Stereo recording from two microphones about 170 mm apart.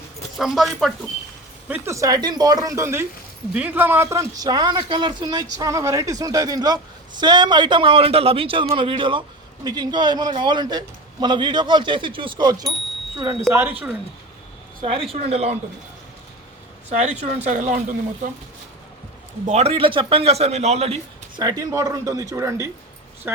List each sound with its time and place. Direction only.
0.3 s speech: centre (ahead or behind)
1.6 s a man's voice: 10° right (ahead or behind)
13.5 s speech: 10° right (ahead or behind)
14.8 s a man's voice: 30° right (ahead or behind)
17.0 s speech: 40° right (ahead or behind)
19.5 s a man's voice: 40° right (ahead or behind)
21.6 s speech: 20° right (ahead or behind)